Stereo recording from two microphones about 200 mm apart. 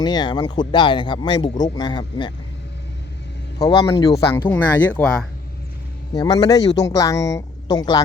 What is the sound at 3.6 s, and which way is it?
Speech, 20° left (ahead or behind).